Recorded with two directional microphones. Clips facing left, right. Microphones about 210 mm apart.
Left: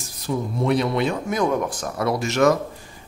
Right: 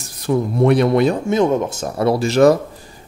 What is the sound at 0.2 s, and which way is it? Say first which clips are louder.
Speech: right 8 dB; 60° right (ahead or behind).